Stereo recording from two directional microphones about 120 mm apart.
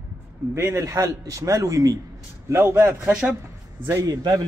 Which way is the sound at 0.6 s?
20° right (ahead or behind).